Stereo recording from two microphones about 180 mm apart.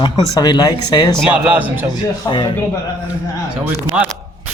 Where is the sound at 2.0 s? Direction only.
20° left (ahead or behind).